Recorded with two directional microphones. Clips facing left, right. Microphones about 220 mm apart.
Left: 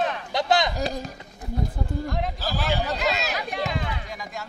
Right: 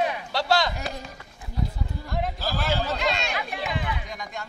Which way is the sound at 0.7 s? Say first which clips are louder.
Left 6 dB; 35° left (ahead or behind).